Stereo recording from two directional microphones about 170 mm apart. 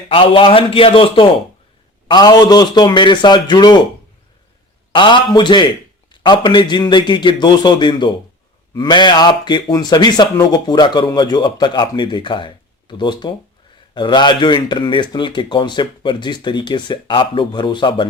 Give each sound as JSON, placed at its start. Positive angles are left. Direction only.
{"t": 0.1, "sound": "a man's voice", "side_deg": 30}
{"t": 4.9, "sound": "speech", "side_deg": 30}